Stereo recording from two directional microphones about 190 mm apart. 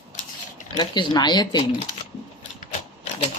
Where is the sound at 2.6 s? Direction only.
35° left (ahead or behind).